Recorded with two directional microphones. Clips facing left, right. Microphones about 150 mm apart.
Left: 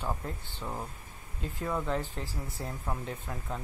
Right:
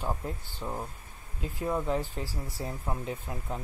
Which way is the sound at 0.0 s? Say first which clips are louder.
Right 2 dB; 10° right (ahead or behind).